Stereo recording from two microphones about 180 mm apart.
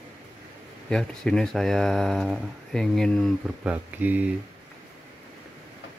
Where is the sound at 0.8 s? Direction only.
5° left (ahead or behind).